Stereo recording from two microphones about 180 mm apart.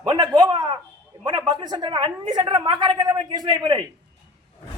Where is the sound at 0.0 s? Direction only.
25° right (ahead or behind).